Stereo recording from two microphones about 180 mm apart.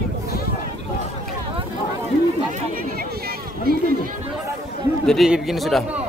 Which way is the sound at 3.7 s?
55° right (ahead or behind).